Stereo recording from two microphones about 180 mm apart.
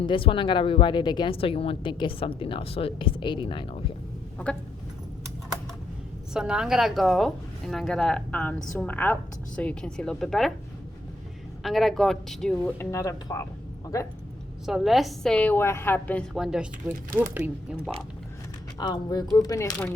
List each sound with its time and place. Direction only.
0.0 s a woman's voice: 30° left (ahead or behind)
6.3 s a woman's voice: 5° right (ahead or behind)
11.6 s a woman's voice: centre (ahead or behind); by 14.1 s 20° left (ahead or behind)
14.7 s a woman's voice: centre (ahead or behind)
16.3 s a woman's voice: 5° right (ahead or behind)
18.8 s a woman's voice: 25° left (ahead or behind)